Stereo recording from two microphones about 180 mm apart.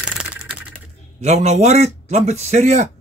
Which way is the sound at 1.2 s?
40° right (ahead or behind).